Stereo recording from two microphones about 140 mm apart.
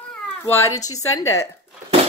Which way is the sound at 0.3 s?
20° left (ahead or behind).